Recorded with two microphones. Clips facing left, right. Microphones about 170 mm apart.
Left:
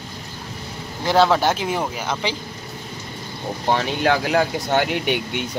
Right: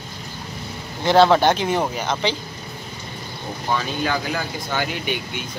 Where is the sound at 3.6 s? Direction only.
70° left (ahead or behind).